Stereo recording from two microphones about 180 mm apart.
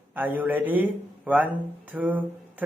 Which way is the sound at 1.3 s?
10° right (ahead or behind).